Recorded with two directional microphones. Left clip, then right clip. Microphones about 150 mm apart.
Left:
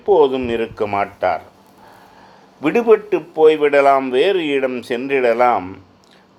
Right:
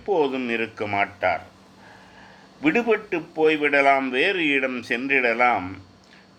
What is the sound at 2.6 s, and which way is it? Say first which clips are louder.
Speech: left 7 dB; 30° left (ahead or behind).